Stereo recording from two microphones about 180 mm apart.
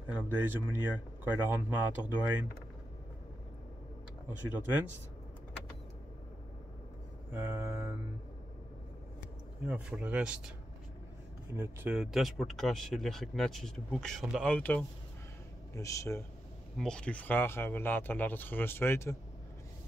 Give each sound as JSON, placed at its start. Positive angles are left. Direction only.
{"t": 0.1, "sound": "speech", "side_deg": -10}
{"t": 7.2, "sound": "speech", "side_deg": -10}
{"t": 9.7, "sound": "speech", "side_deg": -5}
{"t": 11.5, "sound": "speech", "side_deg": -10}
{"t": 16.7, "sound": "speech", "side_deg": 5}